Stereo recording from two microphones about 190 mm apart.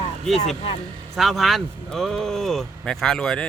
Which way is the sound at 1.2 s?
Centre (ahead or behind).